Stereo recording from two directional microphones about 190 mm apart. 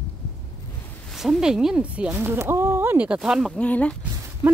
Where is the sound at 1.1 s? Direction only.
Centre (ahead or behind).